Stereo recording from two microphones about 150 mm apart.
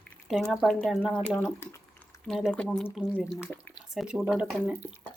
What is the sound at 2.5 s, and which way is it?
Speech, 10° left (ahead or behind).